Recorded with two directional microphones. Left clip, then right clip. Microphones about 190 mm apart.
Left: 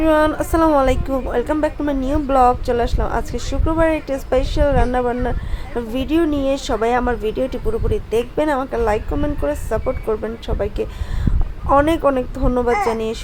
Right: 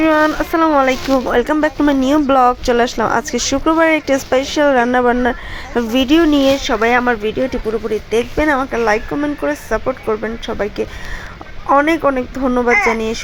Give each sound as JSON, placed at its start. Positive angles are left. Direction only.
{"t": 0.0, "sound": "speech", "side_deg": -20}